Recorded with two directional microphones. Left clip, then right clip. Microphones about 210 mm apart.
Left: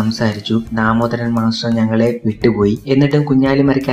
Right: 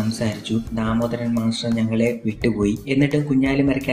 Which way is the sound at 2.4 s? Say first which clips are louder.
Left 7 dB; 15° left (ahead or behind).